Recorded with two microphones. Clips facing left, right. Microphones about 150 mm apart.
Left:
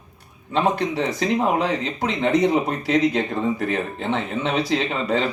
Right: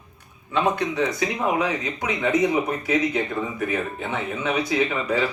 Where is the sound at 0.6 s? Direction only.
30° left (ahead or behind).